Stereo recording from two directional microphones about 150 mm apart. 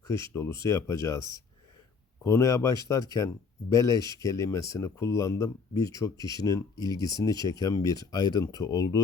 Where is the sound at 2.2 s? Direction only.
20° left (ahead or behind).